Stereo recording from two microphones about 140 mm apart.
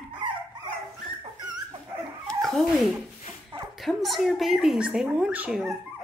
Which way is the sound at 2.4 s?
Centre (ahead or behind).